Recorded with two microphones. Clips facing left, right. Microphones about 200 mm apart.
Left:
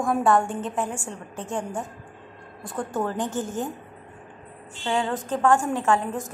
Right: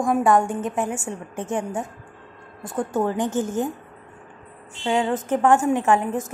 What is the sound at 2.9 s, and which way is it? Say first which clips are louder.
Speech: right 4 dB; 20° right (ahead or behind).